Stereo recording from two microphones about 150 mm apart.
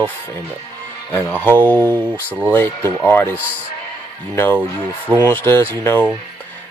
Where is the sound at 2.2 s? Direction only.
10° right (ahead or behind).